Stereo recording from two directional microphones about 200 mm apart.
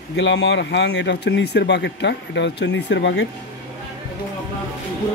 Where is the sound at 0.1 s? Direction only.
60° left (ahead or behind).